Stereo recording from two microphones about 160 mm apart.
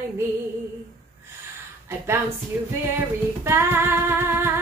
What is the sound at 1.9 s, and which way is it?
Speech, 15° right (ahead or behind).